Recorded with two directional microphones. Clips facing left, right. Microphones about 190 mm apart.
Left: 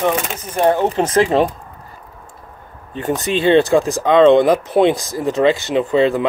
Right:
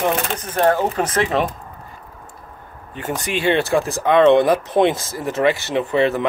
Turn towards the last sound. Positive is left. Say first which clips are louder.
# left 3 dB
turn(degrees=15)  # may be behind; listen again after turning